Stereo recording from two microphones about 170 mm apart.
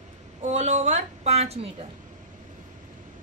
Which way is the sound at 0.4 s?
45° right (ahead or behind).